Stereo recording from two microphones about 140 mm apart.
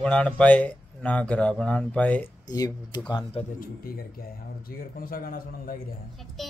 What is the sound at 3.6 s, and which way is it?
A man's voice, 90° left.